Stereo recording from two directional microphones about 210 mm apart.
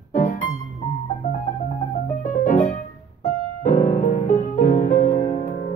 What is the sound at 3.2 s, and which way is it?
Music, 35° left (ahead or behind).